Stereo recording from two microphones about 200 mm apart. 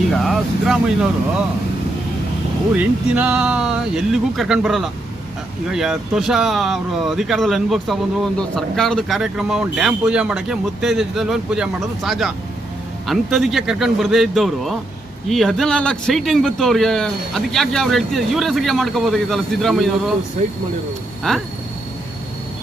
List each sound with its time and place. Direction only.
0.1 s speech: centre (ahead or behind)
2.7 s speech: 5° right (ahead or behind)
20.4 s speech: 35° right (ahead or behind)
21.2 s speech: centre (ahead or behind)